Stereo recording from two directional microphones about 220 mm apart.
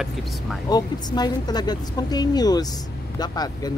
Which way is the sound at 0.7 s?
20° left (ahead or behind).